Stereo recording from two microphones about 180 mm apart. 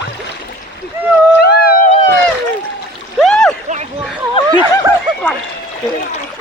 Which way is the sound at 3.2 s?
Centre (ahead or behind).